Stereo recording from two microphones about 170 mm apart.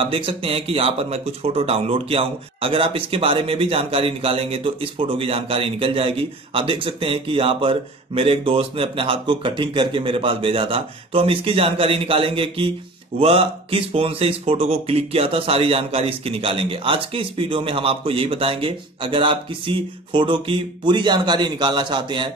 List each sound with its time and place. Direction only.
0.0 s speech: 35° right (ahead or behind)